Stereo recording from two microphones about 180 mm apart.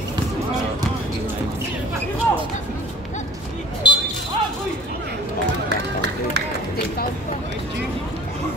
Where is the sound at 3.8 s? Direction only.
25° left (ahead or behind).